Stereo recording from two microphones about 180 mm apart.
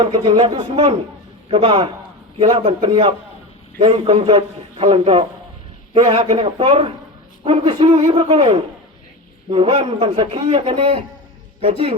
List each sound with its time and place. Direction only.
0.0 s a man's voice: 25° right (ahead or behind)